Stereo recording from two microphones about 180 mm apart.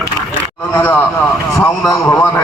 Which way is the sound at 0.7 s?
10° left (ahead or behind).